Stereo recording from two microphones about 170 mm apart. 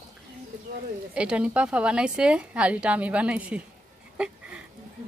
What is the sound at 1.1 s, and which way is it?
A woman's voice, 5° right (ahead or behind).